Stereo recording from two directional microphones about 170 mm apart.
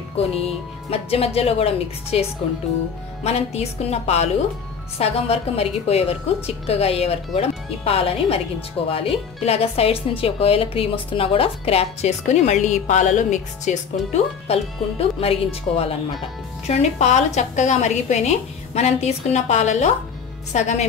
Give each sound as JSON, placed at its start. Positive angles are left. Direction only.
{"t": 0.4, "sound": "a woman's voice", "side_deg": 35}
{"t": 3.3, "sound": "a woman's voice", "side_deg": 40}
{"t": 14.5, "sound": "a woman's voice", "side_deg": 35}